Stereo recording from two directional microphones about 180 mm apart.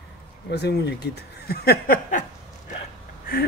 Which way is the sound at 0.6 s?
65° left (ahead or behind).